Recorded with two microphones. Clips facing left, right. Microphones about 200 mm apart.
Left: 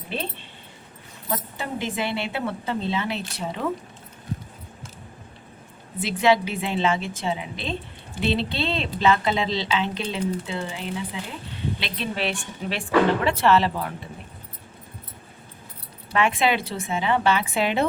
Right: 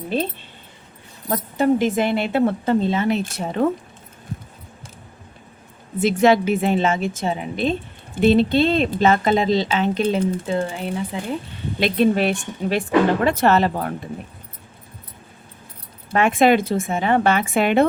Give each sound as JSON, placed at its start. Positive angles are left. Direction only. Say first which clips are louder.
{"t": 0.1, "sound": "speech", "louder": "right 8 dB", "side_deg": -40}
{"t": 1.3, "sound": "speech", "louder": "right 11 dB", "side_deg": -45}
{"t": 6.0, "sound": "speech", "louder": "right 5 dB", "side_deg": -45}
{"t": 16.1, "sound": "speech", "louder": "right 6 dB", "side_deg": -45}